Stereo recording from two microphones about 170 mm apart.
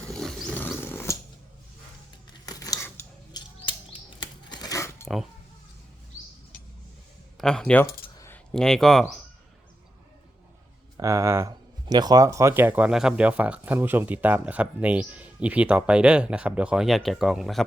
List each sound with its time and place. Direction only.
0.1 s roaring cats: 5° left (ahead or behind)
2.5 s a sound: 20° left (ahead or behind)
3.3 s chirp: 25° left (ahead or behind)
7.3 s speech: 5° left (ahead or behind)
10.9 s speech: 15° right (ahead or behind); by 17.6 s centre (ahead or behind)